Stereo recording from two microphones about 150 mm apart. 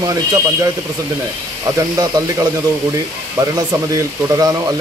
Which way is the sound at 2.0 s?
25° right (ahead or behind).